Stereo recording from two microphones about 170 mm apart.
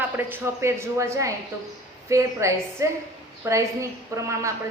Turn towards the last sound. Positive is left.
turn(degrees=-15)  # may be behind; listen again after turning